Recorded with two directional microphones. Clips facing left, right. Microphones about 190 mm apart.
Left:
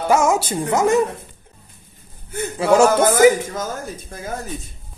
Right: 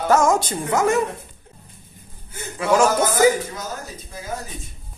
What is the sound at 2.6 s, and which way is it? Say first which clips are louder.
Speech: left 3 dB; 30° left (ahead or behind).